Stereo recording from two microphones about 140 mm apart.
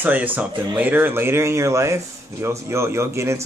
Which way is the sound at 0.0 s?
10° right (ahead or behind).